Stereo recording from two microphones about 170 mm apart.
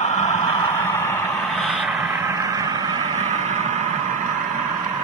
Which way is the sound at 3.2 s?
45° right (ahead or behind).